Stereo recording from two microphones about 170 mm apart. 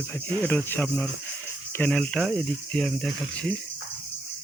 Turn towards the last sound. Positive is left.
turn(degrees=5)  # may be behind; listen again after turning